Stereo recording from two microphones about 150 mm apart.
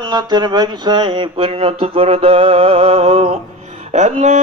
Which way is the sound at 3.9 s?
50° right (ahead or behind).